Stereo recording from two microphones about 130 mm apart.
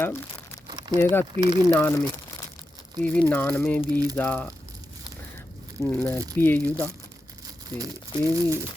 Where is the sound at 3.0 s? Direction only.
10° left (ahead or behind).